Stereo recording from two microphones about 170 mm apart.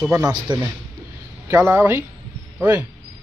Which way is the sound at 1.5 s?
10° right (ahead or behind).